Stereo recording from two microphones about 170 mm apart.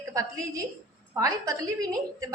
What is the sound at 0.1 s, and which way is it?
A woman's voice, 20° right (ahead or behind).